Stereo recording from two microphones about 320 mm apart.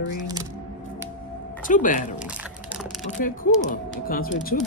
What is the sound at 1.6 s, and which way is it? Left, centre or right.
Speech, left.